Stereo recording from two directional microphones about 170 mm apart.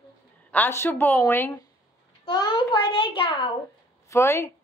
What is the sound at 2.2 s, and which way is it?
A child's voice, 25° left (ahead or behind).